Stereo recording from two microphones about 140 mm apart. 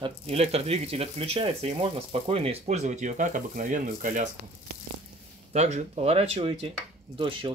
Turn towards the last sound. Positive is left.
turn(degrees=-40)  # may be behind; listen again after turning